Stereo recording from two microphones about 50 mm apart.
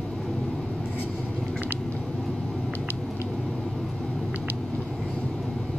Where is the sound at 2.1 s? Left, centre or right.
Centre.